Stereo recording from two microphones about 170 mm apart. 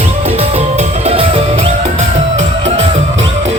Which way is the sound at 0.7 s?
35° right (ahead or behind).